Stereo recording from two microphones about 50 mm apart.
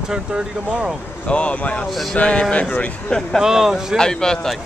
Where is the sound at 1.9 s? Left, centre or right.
Centre.